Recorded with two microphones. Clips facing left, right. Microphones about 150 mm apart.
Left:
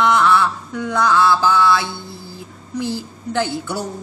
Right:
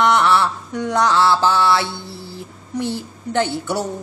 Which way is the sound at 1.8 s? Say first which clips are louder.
Right 2 dB; 70° right (ahead or behind).